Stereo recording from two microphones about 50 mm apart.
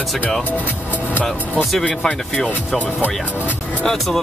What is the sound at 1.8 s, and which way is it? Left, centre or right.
Speech, left.